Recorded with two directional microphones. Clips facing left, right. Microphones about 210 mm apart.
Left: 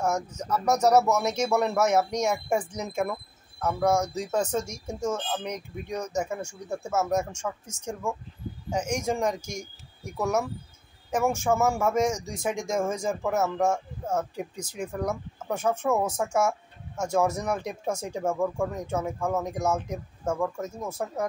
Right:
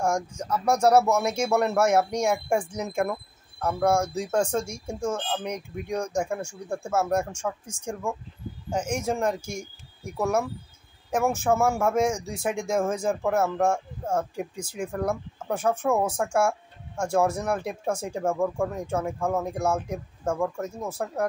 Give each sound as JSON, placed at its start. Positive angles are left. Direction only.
{"t": 0.0, "sound": "speech", "side_deg": -10}
{"t": 6.2, "sound": "speech", "side_deg": 5}
{"t": 6.9, "sound": "speech", "side_deg": -10}